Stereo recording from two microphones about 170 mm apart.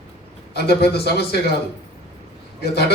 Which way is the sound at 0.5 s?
70° left (ahead or behind).